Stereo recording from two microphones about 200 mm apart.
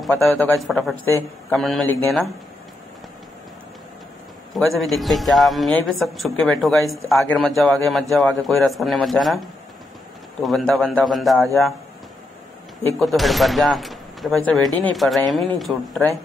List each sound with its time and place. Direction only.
0.0 s speech: centre (ahead or behind)
4.6 s speech: centre (ahead or behind)
10.4 s speech: centre (ahead or behind)
13.0 s speech: centre (ahead or behind)